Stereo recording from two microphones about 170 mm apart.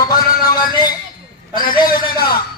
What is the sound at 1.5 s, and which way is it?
Speech, 55° left (ahead or behind).